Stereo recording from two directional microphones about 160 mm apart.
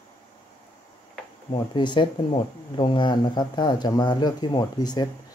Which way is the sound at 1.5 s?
30° left (ahead or behind).